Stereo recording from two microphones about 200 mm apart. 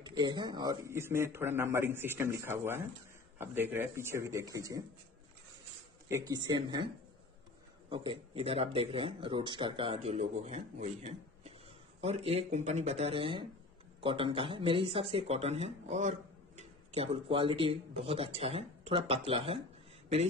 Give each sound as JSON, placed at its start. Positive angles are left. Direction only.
{"t": 0.0, "sound": "a man's voice", "side_deg": -20}
{"t": 6.0, "sound": "speech", "side_deg": -15}
{"t": 7.9, "sound": "speech", "side_deg": -25}